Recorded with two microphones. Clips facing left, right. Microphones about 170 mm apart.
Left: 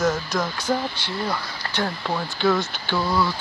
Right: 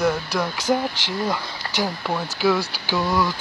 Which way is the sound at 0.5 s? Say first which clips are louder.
Right 3 dB; 90° right.